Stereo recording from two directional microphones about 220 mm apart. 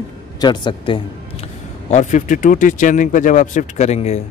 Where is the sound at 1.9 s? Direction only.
35° left (ahead or behind).